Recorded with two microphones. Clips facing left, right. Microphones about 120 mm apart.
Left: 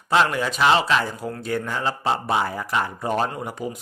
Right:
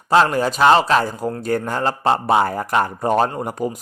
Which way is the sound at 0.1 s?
40° right (ahead or behind).